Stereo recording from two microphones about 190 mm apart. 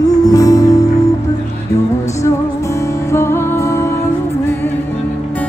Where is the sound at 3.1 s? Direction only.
15° left (ahead or behind).